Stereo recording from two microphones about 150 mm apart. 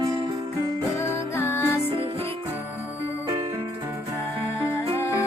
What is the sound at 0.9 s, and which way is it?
Music, 15° left (ahead or behind).